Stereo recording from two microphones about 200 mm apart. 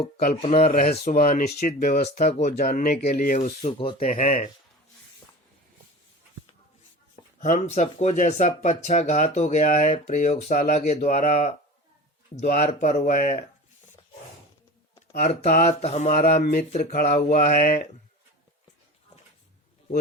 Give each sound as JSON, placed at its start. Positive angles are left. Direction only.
{"t": 0.2, "sound": "speech", "side_deg": 40}
{"t": 3.6, "sound": "speech", "side_deg": 30}
{"t": 4.0, "sound": "speech", "side_deg": 40}
{"t": 7.5, "sound": "speech", "side_deg": 35}
{"t": 15.1, "sound": "speech", "side_deg": 40}